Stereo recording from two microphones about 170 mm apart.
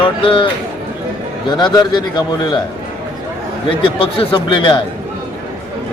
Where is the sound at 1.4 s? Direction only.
25° left (ahead or behind).